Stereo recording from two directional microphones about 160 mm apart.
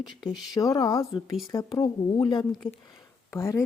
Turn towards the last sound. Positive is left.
turn(degrees=15)  # may be behind; listen again after turning